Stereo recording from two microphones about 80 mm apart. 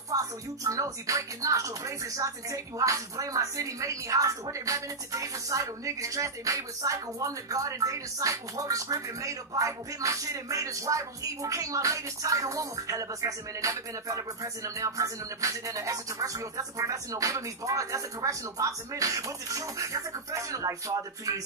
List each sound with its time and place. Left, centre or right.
0.1 s speech: right